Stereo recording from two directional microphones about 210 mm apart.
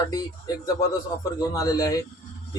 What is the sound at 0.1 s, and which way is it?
Speech, 15° left (ahead or behind).